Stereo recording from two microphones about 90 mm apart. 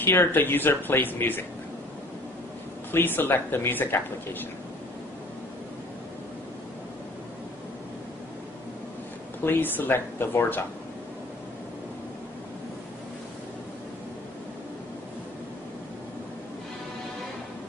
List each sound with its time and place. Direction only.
0.0 s speech: 25° left (ahead or behind)
2.9 s speech: 25° left (ahead or behind)
9.4 s speech: 20° left (ahead or behind)